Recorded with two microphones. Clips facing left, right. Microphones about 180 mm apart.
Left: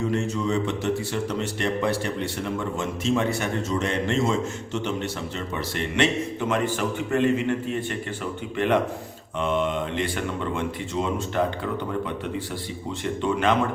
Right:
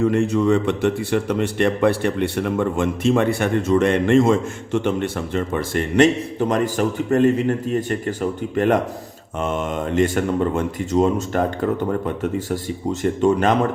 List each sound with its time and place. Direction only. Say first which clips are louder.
0.0 s a man's voice: right 8 dB; 60° right (ahead or behind); by 13.6 s 40° right (ahead or behind)